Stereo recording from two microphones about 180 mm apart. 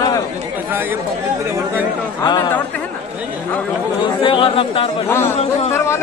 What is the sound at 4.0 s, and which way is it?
Speech, 30° left (ahead or behind).